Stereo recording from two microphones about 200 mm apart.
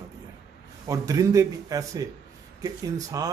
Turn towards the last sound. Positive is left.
turn(degrees=-15)  # may be behind; listen again after turning